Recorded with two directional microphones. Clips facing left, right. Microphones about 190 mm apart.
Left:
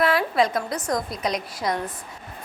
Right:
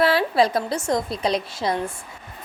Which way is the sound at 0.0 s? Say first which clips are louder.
Right 2 dB; 30° right (ahead or behind).